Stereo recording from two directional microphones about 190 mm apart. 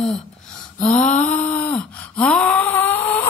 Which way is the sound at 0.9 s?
40° left (ahead or behind).